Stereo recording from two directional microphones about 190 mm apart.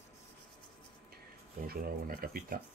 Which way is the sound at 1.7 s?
50° right (ahead or behind).